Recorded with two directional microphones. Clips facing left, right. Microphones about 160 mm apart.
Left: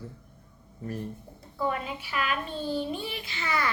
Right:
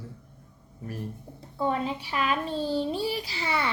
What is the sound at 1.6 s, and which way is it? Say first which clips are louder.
A woman's voice: right 3 dB; 30° right (ahead or behind).